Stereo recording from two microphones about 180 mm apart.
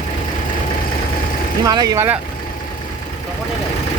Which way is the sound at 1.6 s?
20° right (ahead or behind).